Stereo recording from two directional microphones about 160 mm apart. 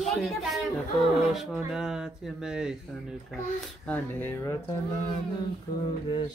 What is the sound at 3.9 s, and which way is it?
Music, 15° left (ahead or behind).